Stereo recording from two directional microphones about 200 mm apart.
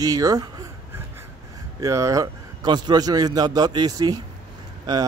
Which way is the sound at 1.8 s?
15° right (ahead or behind).